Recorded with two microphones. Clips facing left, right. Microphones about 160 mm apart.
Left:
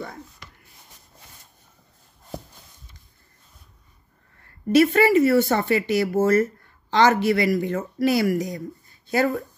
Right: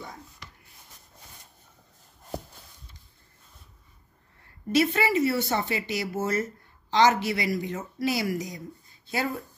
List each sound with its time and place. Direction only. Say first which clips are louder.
4.7 s speech: left 7 dB; 55° left (ahead or behind)